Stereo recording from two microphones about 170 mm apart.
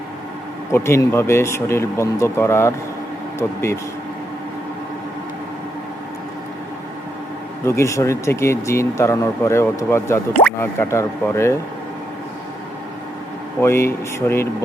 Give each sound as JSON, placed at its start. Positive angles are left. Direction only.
{"t": 0.7, "sound": "speech", "side_deg": 15}
{"t": 7.6, "sound": "speech", "side_deg": 15}
{"t": 13.6, "sound": "speech", "side_deg": 15}